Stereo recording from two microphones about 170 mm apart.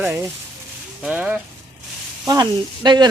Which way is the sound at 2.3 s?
25° right (ahead or behind).